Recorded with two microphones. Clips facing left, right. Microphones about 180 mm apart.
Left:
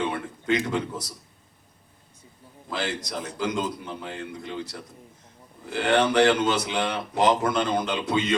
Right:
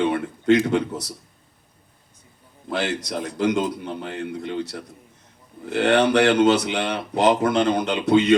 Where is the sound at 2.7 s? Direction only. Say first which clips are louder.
Right 5 dB; 65° right (ahead or behind).